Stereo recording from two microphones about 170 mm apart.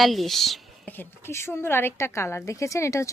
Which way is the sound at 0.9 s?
15° left (ahead or behind).